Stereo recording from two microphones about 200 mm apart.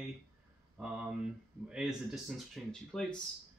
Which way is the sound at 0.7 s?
5° right (ahead or behind).